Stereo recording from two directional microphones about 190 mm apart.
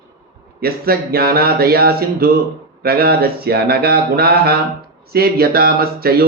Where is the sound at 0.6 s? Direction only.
55° right (ahead or behind).